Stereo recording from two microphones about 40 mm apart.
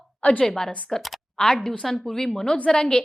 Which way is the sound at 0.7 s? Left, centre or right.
Left.